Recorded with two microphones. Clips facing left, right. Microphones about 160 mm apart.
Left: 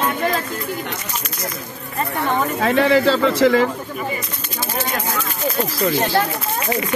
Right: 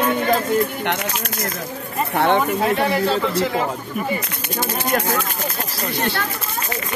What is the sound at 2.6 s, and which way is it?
Speech, 90° left.